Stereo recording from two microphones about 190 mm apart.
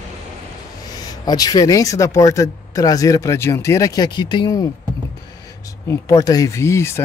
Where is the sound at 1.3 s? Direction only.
20° left (ahead or behind).